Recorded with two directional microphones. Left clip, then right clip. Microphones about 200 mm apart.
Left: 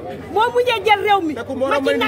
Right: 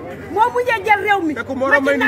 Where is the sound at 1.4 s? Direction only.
15° right (ahead or behind).